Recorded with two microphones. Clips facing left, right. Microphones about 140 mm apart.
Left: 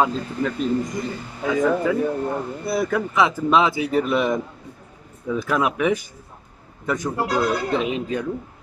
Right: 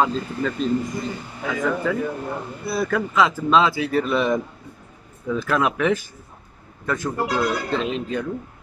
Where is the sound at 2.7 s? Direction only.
20° left (ahead or behind).